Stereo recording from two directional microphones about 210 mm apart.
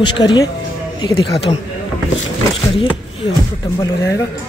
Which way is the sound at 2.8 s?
25° left (ahead or behind).